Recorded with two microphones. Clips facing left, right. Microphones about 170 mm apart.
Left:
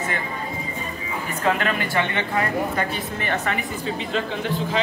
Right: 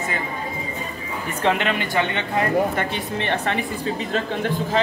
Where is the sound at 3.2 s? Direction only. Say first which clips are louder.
Right 2 dB; 30° right (ahead or behind).